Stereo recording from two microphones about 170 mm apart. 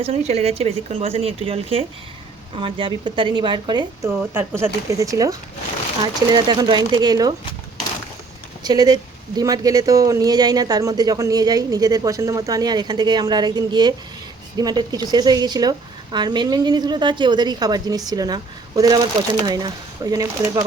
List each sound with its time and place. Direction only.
0.0 s speech: 35° right (ahead or behind)
4.2 s speech: 10° right (ahead or behind)
8.6 s speech: 25° right (ahead or behind)